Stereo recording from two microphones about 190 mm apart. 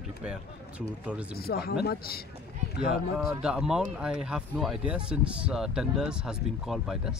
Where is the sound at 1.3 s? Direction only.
55° left (ahead or behind).